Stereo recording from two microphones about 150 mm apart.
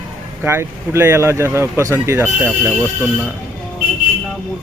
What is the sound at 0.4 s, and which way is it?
Speech, 15° right (ahead or behind).